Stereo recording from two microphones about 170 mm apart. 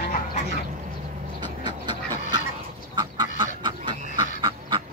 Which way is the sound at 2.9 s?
25° right (ahead or behind).